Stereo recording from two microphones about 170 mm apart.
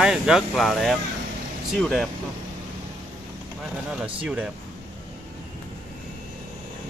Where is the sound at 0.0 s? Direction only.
5° right (ahead or behind).